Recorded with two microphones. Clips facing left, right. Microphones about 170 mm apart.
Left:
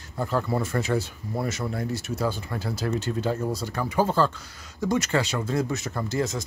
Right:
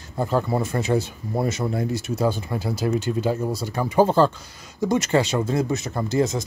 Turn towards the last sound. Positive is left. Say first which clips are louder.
# right 5 dB
turn(degrees=-20)  # may be behind; listen again after turning